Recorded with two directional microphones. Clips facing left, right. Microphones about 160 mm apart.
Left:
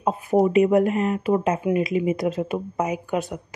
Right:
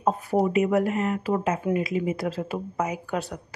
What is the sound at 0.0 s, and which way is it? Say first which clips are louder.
Speech: left 3 dB; 10° left (ahead or behind).